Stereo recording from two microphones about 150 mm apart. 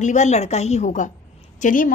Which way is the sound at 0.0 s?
50° left (ahead or behind).